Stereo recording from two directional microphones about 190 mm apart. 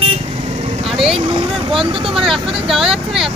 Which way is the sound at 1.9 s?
30° right (ahead or behind).